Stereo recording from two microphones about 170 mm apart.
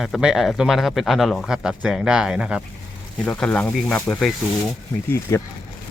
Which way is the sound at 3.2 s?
5° left (ahead or behind).